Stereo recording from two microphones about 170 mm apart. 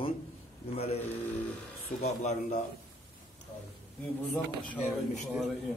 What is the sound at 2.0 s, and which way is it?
Speech, 40° left (ahead or behind).